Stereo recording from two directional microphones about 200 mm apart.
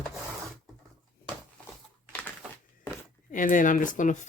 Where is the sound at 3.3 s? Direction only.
40° left (ahead or behind).